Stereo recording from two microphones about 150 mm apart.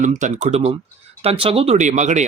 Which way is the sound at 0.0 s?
55° right (ahead or behind).